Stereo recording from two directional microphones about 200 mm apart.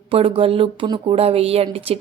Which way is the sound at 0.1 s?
25° right (ahead or behind).